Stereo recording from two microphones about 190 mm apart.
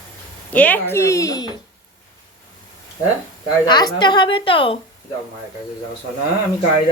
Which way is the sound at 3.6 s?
20° left (ahead or behind).